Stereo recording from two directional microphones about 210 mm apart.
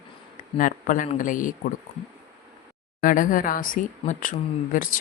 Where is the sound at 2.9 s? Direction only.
40° left (ahead or behind).